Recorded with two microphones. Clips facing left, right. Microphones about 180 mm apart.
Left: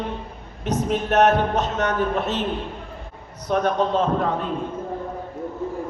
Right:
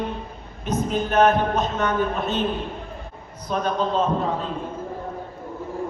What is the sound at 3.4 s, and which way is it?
Speech, 65° left (ahead or behind).